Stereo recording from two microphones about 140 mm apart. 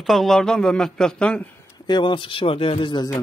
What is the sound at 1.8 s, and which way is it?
Speech, 35° left (ahead or behind).